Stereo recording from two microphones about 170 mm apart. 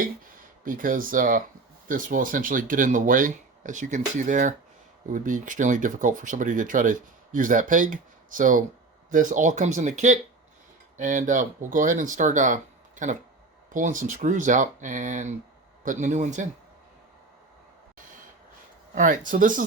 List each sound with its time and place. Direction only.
0.6 s speech: 55° right (ahead or behind)
18.9 s speech: 50° right (ahead or behind)